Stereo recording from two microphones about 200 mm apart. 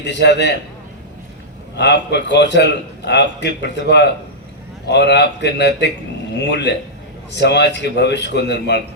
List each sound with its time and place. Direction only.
0.0 s a man's voice: 60° left (ahead or behind)
1.7 s a man's voice: 60° left (ahead or behind)